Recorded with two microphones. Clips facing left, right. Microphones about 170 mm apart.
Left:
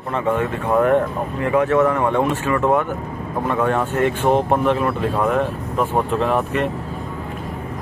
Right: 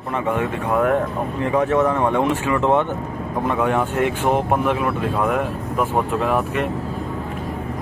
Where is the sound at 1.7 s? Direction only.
15° right (ahead or behind).